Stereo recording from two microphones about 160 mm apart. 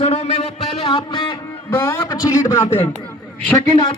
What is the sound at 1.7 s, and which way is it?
A man's voice, 15° left (ahead or behind).